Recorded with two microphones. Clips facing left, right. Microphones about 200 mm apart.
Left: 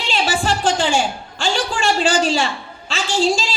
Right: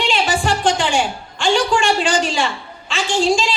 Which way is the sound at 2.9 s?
40° left (ahead or behind).